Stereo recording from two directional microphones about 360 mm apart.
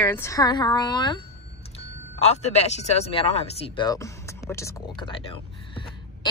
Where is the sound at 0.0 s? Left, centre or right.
Centre.